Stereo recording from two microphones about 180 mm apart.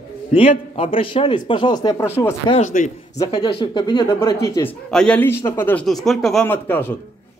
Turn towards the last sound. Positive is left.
turn(degrees=10)  # may be behind; listen again after turning